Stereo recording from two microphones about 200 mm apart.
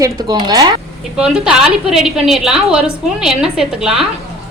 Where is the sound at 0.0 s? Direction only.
20° right (ahead or behind).